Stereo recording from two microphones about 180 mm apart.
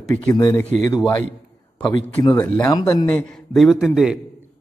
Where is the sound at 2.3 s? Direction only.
10° left (ahead or behind).